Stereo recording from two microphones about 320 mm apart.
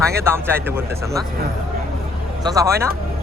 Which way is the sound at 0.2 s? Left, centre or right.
Centre.